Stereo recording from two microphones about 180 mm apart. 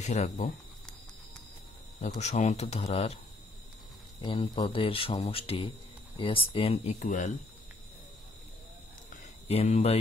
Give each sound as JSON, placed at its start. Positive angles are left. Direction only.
{"t": 0.0, "sound": "speech", "side_deg": 40}
{"t": 2.0, "sound": "speech", "side_deg": 40}
{"t": 4.2, "sound": "speech", "side_deg": 30}
{"t": 9.1, "sound": "a sound", "side_deg": 35}